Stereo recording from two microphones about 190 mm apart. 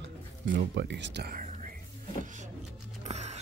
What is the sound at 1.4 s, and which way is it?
Whispering, 40° right (ahead or behind).